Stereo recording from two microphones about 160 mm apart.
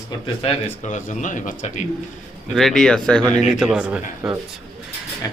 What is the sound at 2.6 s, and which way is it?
Speech, 5° left (ahead or behind).